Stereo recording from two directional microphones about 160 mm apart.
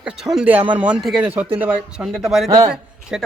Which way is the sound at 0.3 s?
10° right (ahead or behind).